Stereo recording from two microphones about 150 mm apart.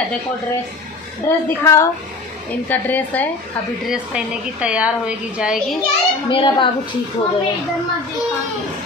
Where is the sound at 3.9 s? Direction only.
5° right (ahead or behind).